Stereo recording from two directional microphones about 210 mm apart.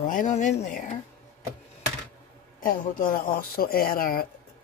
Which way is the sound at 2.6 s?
40° left (ahead or behind).